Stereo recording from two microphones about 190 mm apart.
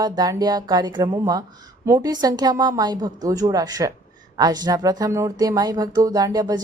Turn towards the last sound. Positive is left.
turn(degrees=-20)  # may be behind; listen again after turning